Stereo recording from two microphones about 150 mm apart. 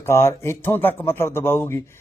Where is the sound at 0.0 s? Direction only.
15° left (ahead or behind).